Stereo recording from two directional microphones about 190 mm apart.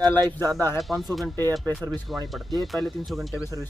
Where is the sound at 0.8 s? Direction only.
Centre (ahead or behind).